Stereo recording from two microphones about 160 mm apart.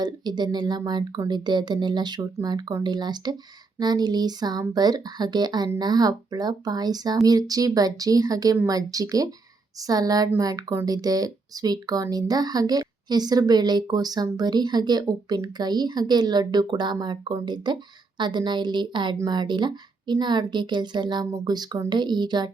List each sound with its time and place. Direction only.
0.0 s speech: 25° right (ahead or behind)